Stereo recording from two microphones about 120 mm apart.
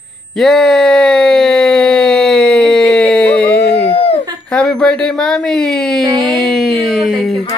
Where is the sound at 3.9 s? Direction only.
55° left (ahead or behind).